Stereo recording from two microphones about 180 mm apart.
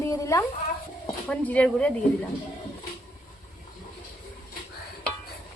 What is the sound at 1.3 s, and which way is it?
Speech, 5° left (ahead or behind).